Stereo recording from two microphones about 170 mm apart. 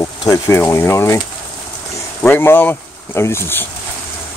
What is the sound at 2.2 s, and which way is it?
Speech, 15° left (ahead or behind).